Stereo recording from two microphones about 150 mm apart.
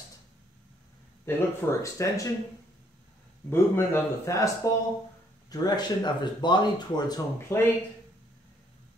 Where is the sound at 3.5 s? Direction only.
15° left (ahead or behind).